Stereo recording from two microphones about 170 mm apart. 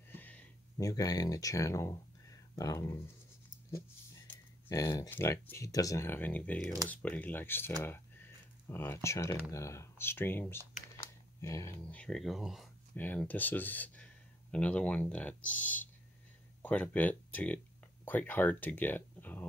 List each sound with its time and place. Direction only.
0.1 s a sound: 10° left (ahead or behind)
4.6 s speech: 20° left (ahead or behind)
12.0 s speech: centre (ahead or behind)